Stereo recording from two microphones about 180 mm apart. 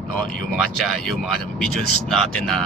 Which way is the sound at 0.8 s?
Centre (ahead or behind).